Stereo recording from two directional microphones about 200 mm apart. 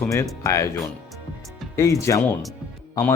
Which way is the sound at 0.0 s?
15° left (ahead or behind).